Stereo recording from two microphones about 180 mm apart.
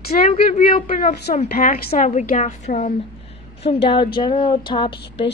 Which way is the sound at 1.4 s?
50° left (ahead or behind).